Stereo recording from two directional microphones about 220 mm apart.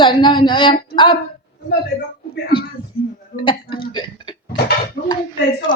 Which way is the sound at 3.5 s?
20° left (ahead or behind).